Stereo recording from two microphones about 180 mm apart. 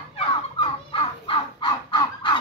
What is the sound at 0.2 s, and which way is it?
Crow, 30° left (ahead or behind).